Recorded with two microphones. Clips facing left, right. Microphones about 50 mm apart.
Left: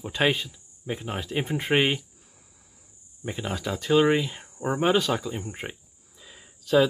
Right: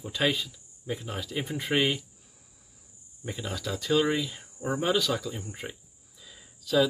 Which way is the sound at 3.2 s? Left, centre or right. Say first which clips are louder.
Left 4 dB; left.